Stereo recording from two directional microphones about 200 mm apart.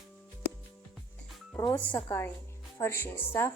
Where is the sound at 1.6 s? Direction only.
10° left (ahead or behind).